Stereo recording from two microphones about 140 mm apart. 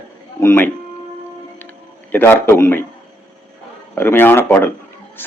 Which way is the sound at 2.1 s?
15° left (ahead or behind).